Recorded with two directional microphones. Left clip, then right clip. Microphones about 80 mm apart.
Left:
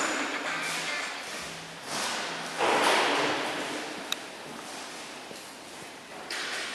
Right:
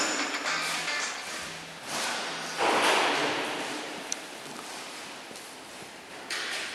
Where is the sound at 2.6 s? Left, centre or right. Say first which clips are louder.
Even; right.